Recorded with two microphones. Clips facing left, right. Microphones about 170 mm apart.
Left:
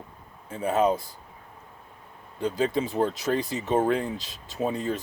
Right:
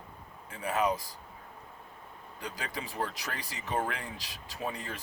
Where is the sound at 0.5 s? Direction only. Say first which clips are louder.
Left 7 dB; 25° left (ahead or behind).